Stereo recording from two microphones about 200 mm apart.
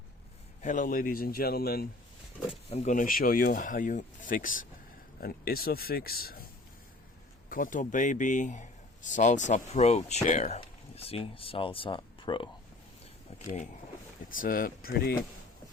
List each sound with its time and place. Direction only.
0.6 s speech: 40° left (ahead or behind)
2.5 s a man's voice: 35° left (ahead or behind); by 6.5 s 50° left (ahead or behind)
7.5 s a man's voice: 40° left (ahead or behind); by 12.5 s 25° left (ahead or behind)
13.3 s a sound: 30° left (ahead or behind)
14.3 s speech: 45° left (ahead or behind)